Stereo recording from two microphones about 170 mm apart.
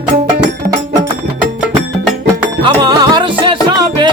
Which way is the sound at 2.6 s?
25° right (ahead or behind).